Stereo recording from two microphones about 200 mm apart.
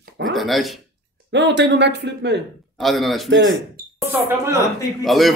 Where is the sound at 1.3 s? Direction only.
60° right (ahead or behind).